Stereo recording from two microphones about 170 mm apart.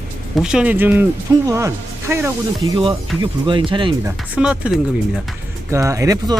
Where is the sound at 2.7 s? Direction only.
25° right (ahead or behind).